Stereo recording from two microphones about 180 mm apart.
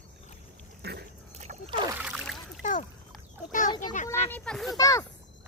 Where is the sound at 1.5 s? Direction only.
45° right (ahead or behind).